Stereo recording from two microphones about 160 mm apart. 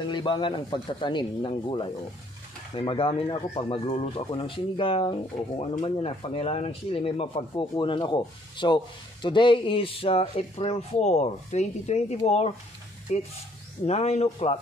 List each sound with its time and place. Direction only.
0.1 s speech: 30° left (ahead or behind)